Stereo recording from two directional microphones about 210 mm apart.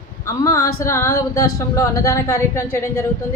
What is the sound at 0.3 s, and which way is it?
A woman's voice, 15° left (ahead or behind).